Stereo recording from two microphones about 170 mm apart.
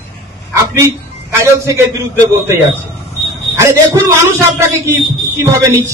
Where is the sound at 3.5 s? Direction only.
15° right (ahead or behind).